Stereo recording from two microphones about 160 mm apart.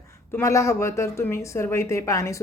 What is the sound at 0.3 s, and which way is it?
A woman's voice, 20° left (ahead or behind).